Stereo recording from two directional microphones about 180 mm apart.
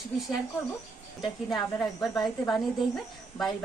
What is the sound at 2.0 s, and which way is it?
Speech, centre (ahead or behind).